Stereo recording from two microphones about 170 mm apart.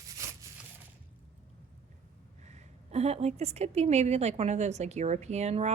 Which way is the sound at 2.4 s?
40° right (ahead or behind).